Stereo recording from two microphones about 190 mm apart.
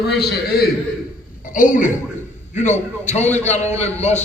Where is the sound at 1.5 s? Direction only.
45° left (ahead or behind).